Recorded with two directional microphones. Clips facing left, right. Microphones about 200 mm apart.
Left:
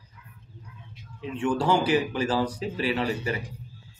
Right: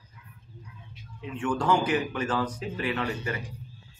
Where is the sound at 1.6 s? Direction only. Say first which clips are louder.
Left 2 dB; 30° left (ahead or behind).